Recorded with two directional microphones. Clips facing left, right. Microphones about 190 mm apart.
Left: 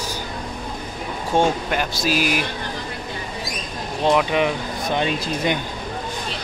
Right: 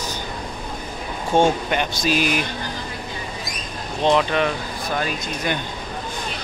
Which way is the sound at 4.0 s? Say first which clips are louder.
Even; 5° left (ahead or behind).